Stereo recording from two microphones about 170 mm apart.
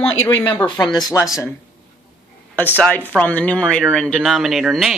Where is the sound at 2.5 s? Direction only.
10° left (ahead or behind).